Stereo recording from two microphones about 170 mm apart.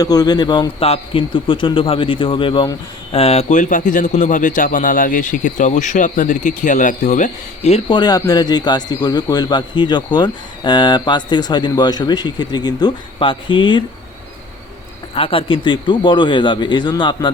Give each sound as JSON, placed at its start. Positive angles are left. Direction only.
{"t": 0.0, "sound": "a man's voice", "side_deg": 20}
{"t": 7.9, "sound": "a man's voice", "side_deg": 25}
{"t": 15.1, "sound": "a man's voice", "side_deg": 35}